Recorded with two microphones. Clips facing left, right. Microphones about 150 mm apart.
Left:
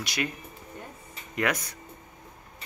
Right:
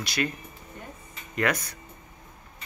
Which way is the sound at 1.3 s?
15° left (ahead or behind).